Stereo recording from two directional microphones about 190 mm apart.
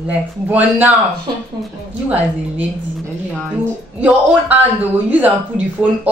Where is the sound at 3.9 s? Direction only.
10° right (ahead or behind).